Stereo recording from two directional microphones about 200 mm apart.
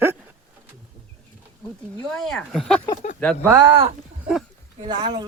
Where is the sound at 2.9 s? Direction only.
40° left (ahead or behind).